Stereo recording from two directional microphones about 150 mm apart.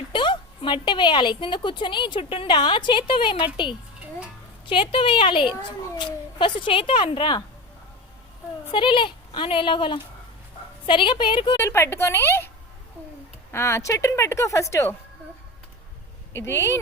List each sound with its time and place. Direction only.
0.1 s a woman's voice: 35° left (ahead or behind)
8.7 s a woman's voice: 35° left (ahead or behind)
11.5 s a woman's voice: 15° left (ahead or behind)
13.5 s speech: 15° left (ahead or behind)
16.3 s a woman's voice: 15° left (ahead or behind)